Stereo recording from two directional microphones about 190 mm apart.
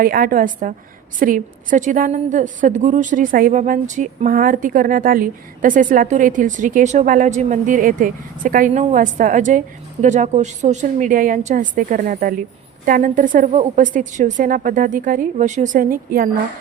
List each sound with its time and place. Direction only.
0.0 s a woman's voice: 50° right (ahead or behind)